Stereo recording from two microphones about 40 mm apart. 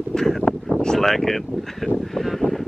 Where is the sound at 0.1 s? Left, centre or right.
Centre.